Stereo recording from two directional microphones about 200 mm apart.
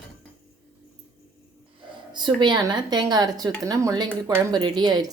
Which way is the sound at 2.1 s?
20° right (ahead or behind).